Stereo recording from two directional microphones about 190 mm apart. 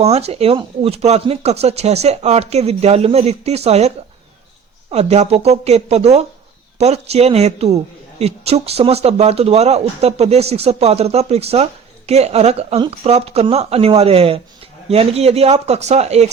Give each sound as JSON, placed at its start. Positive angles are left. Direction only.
{"t": 0.0, "sound": "speech", "side_deg": -35}